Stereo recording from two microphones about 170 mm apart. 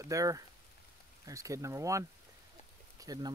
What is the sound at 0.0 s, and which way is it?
Speech, 20° right (ahead or behind).